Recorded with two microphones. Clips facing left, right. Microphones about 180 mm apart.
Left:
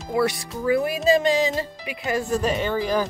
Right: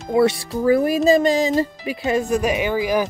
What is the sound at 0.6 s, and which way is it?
Speech, 40° right (ahead or behind).